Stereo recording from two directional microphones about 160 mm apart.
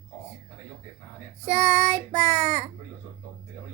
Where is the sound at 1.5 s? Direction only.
45° right (ahead or behind).